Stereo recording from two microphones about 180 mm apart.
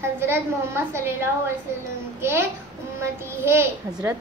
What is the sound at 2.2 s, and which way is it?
A child's voice, 15° right (ahead or behind).